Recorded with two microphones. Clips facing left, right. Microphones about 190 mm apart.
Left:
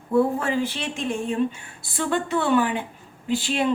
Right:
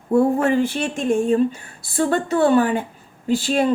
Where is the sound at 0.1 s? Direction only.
55° right (ahead or behind).